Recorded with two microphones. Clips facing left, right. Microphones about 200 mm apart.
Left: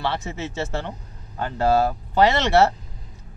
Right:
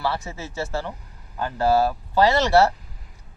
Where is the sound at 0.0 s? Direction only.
25° left (ahead or behind).